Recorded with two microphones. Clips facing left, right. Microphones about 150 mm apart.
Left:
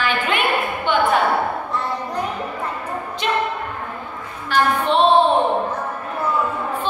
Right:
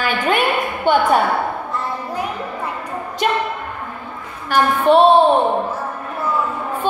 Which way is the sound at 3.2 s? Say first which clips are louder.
Right 4 dB; 50° right (ahead or behind).